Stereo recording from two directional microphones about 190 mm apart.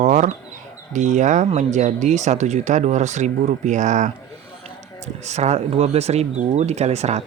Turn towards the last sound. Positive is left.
turn(degrees=-35)  # may be behind; listen again after turning